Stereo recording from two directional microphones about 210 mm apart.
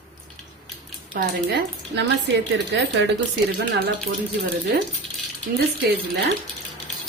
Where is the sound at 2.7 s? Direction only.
55° right (ahead or behind).